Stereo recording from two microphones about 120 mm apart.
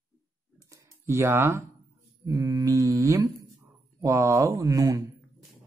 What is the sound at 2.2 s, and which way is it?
Mantra, 30° right (ahead or behind).